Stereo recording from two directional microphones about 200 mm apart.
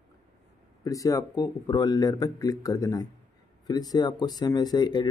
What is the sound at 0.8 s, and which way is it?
Speech, 15° left (ahead or behind).